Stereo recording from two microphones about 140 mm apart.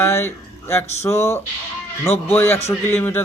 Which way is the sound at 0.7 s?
20° left (ahead or behind).